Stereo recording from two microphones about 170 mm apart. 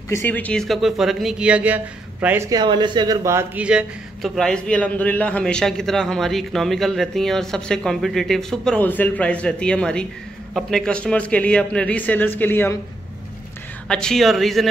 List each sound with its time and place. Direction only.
0.1 s a man's voice: 10° left (ahead or behind)
13.8 s speech: 5° left (ahead or behind)